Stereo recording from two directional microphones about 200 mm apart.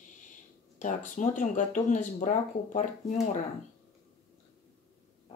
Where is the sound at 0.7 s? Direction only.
40° left (ahead or behind).